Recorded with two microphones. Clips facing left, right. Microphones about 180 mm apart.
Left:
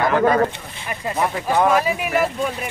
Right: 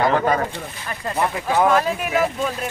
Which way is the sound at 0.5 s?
15° left (ahead or behind).